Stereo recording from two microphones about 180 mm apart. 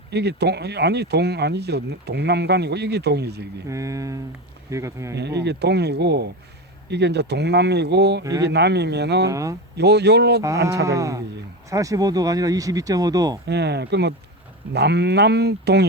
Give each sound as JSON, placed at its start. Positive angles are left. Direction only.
{"t": 0.1, "sound": "speech", "side_deg": -65}
{"t": 3.7, "sound": "speech", "side_deg": -15}
{"t": 5.1, "sound": "speech", "side_deg": -70}
{"t": 8.2, "sound": "speech", "side_deg": -20}
{"t": 8.4, "sound": "speech", "side_deg": -70}
{"t": 9.3, "sound": "speech", "side_deg": -20}
{"t": 9.7, "sound": "speech", "side_deg": -65}
{"t": 10.4, "sound": "speech", "side_deg": -15}
{"t": 13.5, "sound": "speech", "side_deg": -70}